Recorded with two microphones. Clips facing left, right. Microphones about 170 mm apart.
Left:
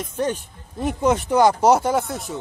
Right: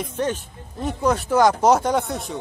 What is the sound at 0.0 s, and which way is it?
A man's voice, 10° left (ahead or behind).